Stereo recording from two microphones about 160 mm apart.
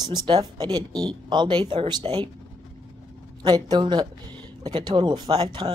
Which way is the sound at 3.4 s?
25° right (ahead or behind).